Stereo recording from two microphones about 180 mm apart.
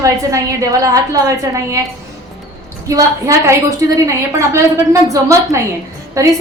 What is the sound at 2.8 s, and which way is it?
A woman's voice, 20° right (ahead or behind).